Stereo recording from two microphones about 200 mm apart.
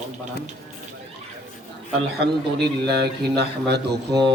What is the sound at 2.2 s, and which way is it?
Speech, 55° right (ahead or behind).